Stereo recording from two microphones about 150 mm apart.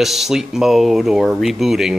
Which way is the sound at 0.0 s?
Centre (ahead or behind).